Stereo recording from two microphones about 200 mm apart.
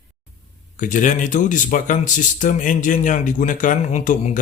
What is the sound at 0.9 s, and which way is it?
A man's voice, 40° left (ahead or behind).